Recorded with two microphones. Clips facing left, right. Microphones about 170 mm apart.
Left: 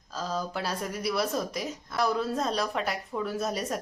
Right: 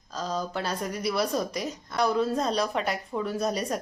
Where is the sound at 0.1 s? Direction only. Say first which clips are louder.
Right 1 dB; 5° left (ahead or behind).